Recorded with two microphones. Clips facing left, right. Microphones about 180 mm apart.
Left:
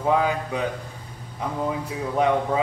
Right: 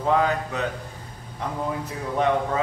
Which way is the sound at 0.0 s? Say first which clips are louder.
Even; 10° left (ahead or behind).